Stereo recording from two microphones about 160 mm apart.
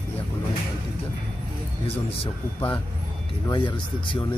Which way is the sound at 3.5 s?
30° left (ahead or behind).